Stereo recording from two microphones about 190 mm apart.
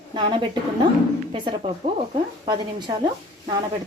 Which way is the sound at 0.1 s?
25° right (ahead or behind).